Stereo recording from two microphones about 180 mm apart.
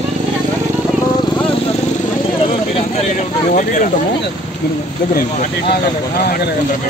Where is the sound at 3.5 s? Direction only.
45° left (ahead or behind).